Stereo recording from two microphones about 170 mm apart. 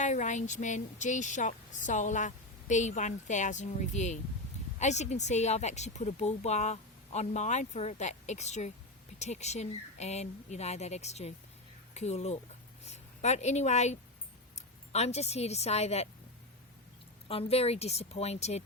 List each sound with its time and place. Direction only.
0.0 s a woman's voice: 45° left (ahead or behind)
17.2 s speech: 35° left (ahead or behind)